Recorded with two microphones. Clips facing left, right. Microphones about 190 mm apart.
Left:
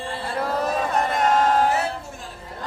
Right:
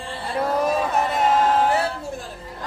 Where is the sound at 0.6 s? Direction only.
5° right (ahead or behind).